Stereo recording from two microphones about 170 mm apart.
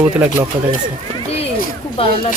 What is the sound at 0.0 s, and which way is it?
Speech, 10° right (ahead or behind).